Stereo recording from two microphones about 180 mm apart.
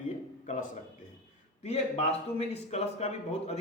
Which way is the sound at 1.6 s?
35° left (ahead or behind).